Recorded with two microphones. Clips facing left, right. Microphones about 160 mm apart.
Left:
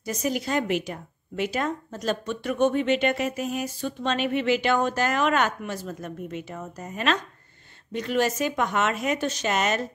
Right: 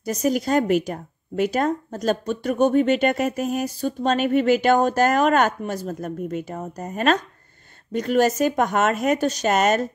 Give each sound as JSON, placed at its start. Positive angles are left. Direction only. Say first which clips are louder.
{"t": 0.0, "sound": "speech", "louder": "right 6 dB", "side_deg": -40}